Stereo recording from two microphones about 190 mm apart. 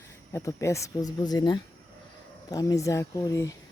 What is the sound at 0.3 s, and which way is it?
Speech, 15° left (ahead or behind).